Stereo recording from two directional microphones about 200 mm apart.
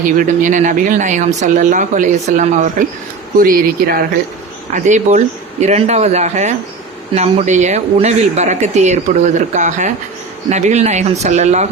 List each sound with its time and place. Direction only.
0.0 s speech: 40° right (ahead or behind)